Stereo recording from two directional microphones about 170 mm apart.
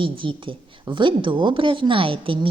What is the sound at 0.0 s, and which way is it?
A woman's voice, 30° right (ahead or behind).